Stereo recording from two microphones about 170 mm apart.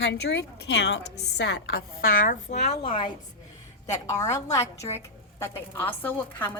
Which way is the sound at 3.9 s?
20° left (ahead or behind).